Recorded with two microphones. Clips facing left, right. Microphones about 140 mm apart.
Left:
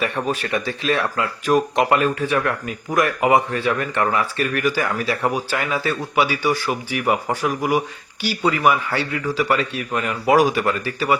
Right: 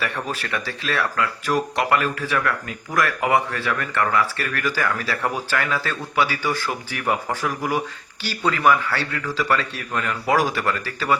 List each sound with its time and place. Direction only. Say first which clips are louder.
0.0 s speech: left 5 dB; 20° left (ahead or behind)